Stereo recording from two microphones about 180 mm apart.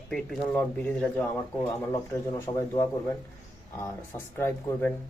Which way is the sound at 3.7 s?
15° left (ahead or behind).